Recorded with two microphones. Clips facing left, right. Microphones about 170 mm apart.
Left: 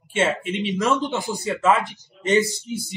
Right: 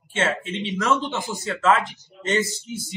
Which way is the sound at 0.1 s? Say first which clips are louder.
Left 3 dB; 10° left (ahead or behind).